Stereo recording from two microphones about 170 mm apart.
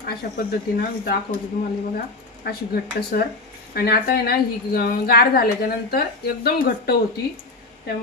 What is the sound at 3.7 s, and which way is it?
A woman's voice, 65° left (ahead or behind).